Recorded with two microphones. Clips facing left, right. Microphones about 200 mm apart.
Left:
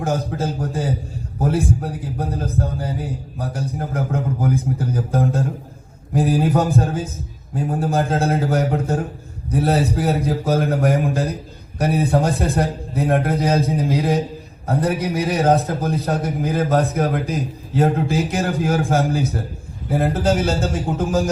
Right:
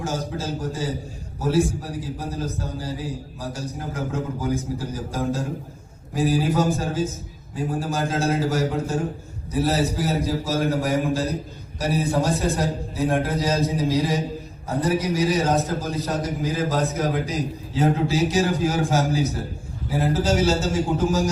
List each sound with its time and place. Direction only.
0.0 s a man's voice: 60° left (ahead or behind)